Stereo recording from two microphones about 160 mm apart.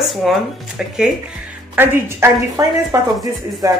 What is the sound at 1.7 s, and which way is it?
A woman's voice, 15° right (ahead or behind).